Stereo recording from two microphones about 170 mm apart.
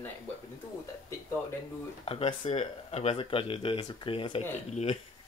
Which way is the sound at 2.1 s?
35° left (ahead or behind).